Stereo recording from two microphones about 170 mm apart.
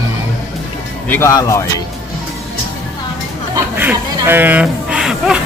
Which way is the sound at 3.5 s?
10° right (ahead or behind).